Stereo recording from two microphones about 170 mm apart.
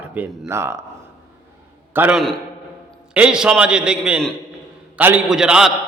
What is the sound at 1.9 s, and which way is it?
A man's voice, 10° right (ahead or behind).